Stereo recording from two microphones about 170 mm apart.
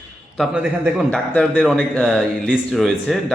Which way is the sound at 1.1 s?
5° left (ahead or behind).